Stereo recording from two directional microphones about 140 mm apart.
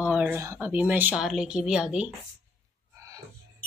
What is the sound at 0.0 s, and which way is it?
A woman's voice, 10° right (ahead or behind).